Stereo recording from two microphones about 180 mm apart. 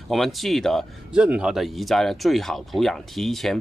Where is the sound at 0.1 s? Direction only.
Centre (ahead or behind).